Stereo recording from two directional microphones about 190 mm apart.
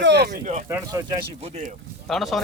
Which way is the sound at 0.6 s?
15° right (ahead or behind).